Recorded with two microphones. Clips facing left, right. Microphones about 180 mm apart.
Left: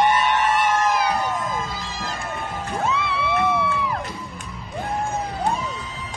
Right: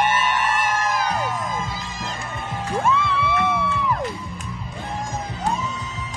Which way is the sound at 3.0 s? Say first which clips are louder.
Even; 60° left (ahead or behind).